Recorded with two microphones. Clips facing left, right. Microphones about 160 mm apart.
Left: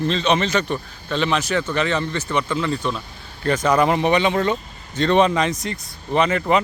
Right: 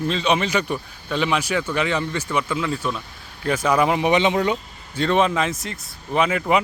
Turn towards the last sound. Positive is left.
turn(degrees=-5)  # may be behind; listen again after turning